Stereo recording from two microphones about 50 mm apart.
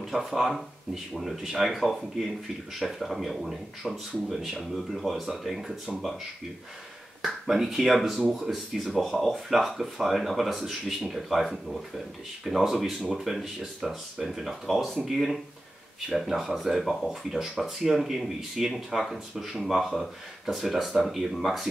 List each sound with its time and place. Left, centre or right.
0.0 s speech: centre
7.2 s speech: centre